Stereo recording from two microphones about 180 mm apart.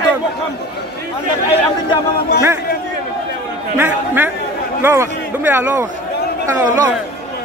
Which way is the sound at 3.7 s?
10° right (ahead or behind).